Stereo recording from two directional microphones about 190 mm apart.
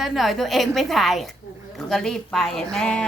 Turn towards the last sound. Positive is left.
turn(degrees=5)  # may be behind; listen again after turning